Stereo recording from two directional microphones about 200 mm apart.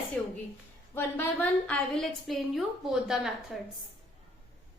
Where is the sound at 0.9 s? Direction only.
10° left (ahead or behind).